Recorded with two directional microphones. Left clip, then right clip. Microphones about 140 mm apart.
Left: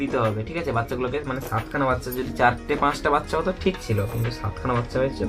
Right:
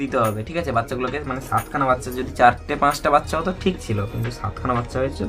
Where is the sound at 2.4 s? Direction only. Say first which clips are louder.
Right 4 dB; 30° right (ahead or behind).